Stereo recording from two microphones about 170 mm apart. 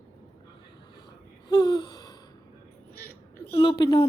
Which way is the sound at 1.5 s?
25° left (ahead or behind).